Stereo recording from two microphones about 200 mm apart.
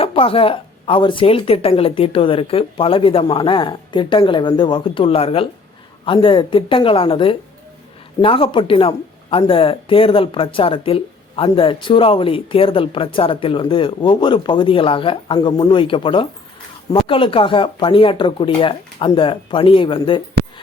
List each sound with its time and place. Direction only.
0.0 s speech: 25° left (ahead or behind)